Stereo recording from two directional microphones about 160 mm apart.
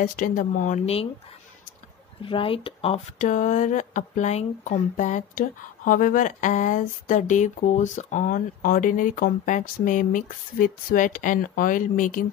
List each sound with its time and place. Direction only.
0.0 s speech: 55° left (ahead or behind)
2.2 s speech: 35° left (ahead or behind)
3.2 s speech: 50° left (ahead or behind)